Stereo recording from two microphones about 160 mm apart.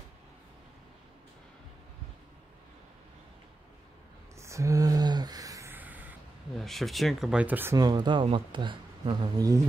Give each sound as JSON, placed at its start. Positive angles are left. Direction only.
{"t": 4.4, "sound": "a sound", "side_deg": -20}
{"t": 6.6, "sound": "speech", "side_deg": 0}
{"t": 7.8, "sound": "a man's voice", "side_deg": -30}